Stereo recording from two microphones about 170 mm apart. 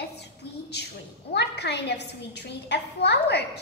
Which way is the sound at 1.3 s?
80° left.